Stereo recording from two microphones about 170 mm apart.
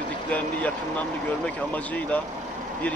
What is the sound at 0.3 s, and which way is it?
A man's voice, 10° left (ahead or behind).